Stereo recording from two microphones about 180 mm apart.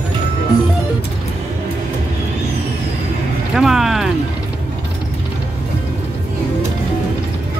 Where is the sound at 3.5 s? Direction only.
Centre (ahead or behind).